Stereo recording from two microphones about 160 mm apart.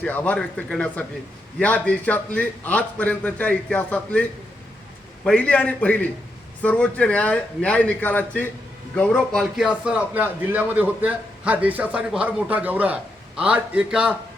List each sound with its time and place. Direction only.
0.0 s a man's voice: 10° left (ahead or behind); by 14.2 s 5° right (ahead or behind)